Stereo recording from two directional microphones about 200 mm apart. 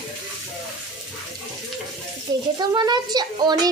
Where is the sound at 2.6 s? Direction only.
20° right (ahead or behind).